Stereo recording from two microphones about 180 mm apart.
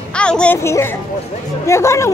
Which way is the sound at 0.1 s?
5° left (ahead or behind).